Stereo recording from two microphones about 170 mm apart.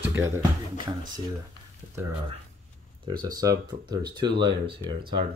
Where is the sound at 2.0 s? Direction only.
15° right (ahead or behind).